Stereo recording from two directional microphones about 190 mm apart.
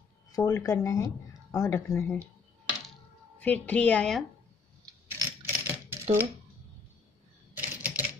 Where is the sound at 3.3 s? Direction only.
10° left (ahead or behind).